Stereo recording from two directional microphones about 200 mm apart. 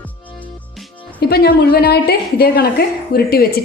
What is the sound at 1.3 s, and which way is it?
A woman's voice, 50° left (ahead or behind).